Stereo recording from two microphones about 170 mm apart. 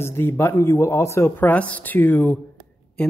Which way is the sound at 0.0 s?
15° left (ahead or behind).